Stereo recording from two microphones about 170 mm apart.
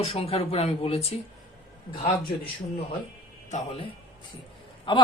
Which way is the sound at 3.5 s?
40° left (ahead or behind).